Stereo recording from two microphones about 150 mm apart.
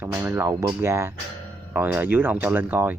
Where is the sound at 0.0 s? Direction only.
10° right (ahead or behind).